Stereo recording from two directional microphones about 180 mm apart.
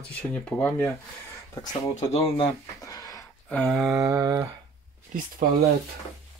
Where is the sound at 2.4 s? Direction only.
20° left (ahead or behind).